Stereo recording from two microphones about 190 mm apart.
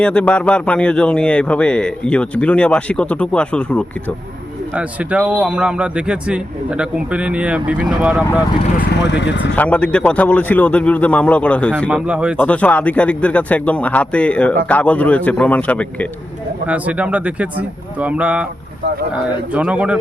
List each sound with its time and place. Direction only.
0.0 s a man's voice: 5° left (ahead or behind)
4.7 s a man's voice: 5° right (ahead or behind)
8.9 s speech: 65° left (ahead or behind)
9.6 s a man's voice: 5° left (ahead or behind)
11.9 s a man's voice: 5° right (ahead or behind)
12.4 s a man's voice: 5° left (ahead or behind)
16.6 s speech: 5° right (ahead or behind)
19.5 s a man's voice: 5° right (ahead or behind)